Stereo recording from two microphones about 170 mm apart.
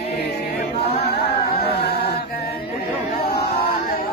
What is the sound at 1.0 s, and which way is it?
Chant, 75° left (ahead or behind).